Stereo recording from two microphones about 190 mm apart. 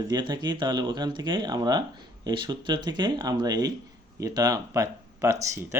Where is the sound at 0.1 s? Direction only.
25° right (ahead or behind).